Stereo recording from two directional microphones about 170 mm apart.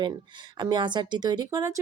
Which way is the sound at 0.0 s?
25° right (ahead or behind).